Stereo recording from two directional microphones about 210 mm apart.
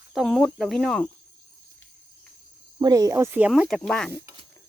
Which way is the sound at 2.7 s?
15° right (ahead or behind).